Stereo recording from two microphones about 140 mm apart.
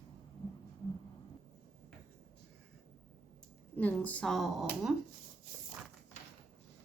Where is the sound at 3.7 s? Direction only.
10° left (ahead or behind).